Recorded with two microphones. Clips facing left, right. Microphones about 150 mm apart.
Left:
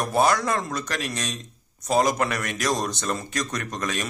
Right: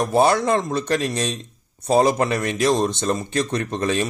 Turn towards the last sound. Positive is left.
turn(degrees=-30)  # may be behind; listen again after turning